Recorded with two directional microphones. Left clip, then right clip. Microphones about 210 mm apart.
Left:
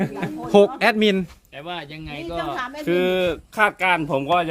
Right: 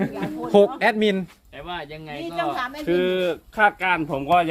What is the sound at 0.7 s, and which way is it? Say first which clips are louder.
Speech: left 2 dB; 15° left (ahead or behind).